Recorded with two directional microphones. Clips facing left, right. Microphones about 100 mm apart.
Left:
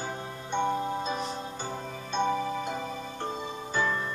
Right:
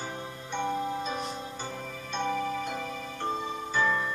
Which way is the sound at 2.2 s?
15° left (ahead or behind).